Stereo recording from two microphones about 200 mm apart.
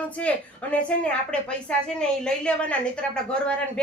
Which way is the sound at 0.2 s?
5° left (ahead or behind).